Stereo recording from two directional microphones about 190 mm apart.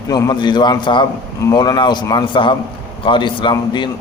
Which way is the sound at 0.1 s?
20° left (ahead or behind).